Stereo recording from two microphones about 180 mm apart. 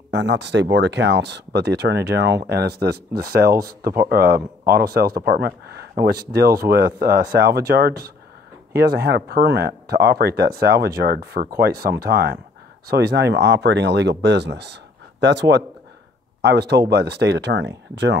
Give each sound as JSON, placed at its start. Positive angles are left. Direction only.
{"t": 0.1, "sound": "speech", "side_deg": -75}